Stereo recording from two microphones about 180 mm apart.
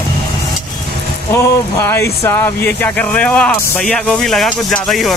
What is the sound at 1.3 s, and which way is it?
Speech, 15° left (ahead or behind).